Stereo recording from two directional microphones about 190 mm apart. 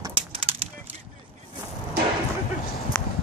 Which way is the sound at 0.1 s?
30° right (ahead or behind).